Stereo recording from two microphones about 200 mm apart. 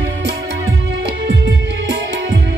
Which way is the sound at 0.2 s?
60° right (ahead or behind).